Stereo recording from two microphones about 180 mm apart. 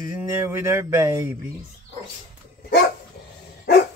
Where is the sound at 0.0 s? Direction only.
15° right (ahead or behind).